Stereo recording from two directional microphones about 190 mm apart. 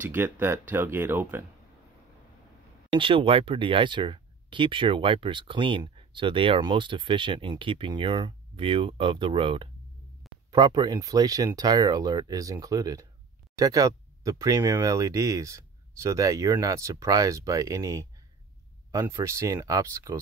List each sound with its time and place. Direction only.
0.0 s speech: 10° right (ahead or behind)
2.9 s speech: 25° right (ahead or behind)